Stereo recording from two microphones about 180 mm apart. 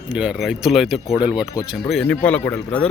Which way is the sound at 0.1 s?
5° right (ahead or behind).